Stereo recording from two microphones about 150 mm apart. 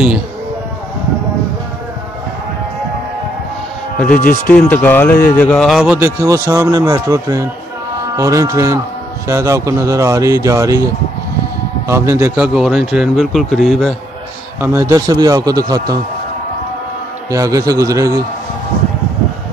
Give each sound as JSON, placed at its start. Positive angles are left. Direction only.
{"t": 4.1, "sound": "speech", "side_deg": 70}
{"t": 4.5, "sound": "speech", "side_deg": 10}
{"t": 5.9, "sound": "speech", "side_deg": -20}
{"t": 11.9, "sound": "a man's voice", "side_deg": -15}
{"t": 12.5, "sound": "speech", "side_deg": -5}
{"t": 14.6, "sound": "speech", "side_deg": -20}
{"t": 17.3, "sound": "speech", "side_deg": -20}